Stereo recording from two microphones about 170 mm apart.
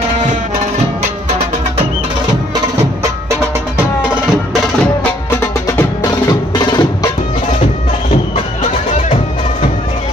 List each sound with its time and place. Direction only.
6.0 s music: 25° left (ahead or behind)